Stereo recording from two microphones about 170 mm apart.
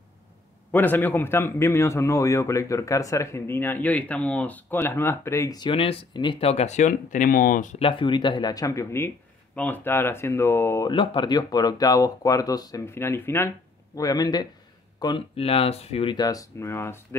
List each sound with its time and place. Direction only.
0.7 s a man's voice: 10° left (ahead or behind); by 6.5 s 30° left (ahead or behind)
6.5 s speech: 40° left (ahead or behind)
7.8 s a man's voice: 30° left (ahead or behind)
10.9 s speech: 30° left (ahead or behind)